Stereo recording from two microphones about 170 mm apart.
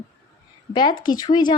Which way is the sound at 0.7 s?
30° left (ahead or behind).